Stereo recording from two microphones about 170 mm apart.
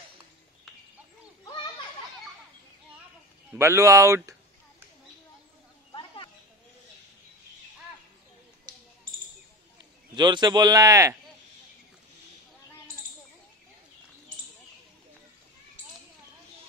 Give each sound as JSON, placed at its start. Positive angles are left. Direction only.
{"t": 3.5, "sound": "speech", "side_deg": -15}
{"t": 10.1, "sound": "a man's voice", "side_deg": -25}